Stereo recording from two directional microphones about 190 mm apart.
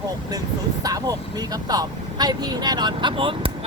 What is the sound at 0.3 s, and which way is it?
Speech, 20° right (ahead or behind).